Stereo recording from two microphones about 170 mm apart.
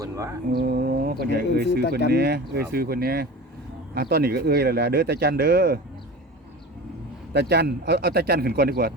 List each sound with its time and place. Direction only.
0.0 s mantra: 20° right (ahead or behind)
0.5 s speech: 65° right (ahead or behind)
7.3 s speech: 75° right (ahead or behind)